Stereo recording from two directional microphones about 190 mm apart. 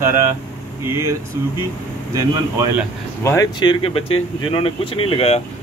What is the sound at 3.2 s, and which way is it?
Speech, 15° left (ahead or behind).